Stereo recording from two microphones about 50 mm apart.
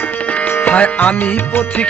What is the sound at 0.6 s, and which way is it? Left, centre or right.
Music, left.